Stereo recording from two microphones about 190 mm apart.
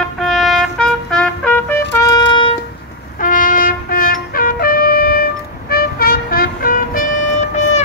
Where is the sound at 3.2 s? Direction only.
45° left (ahead or behind).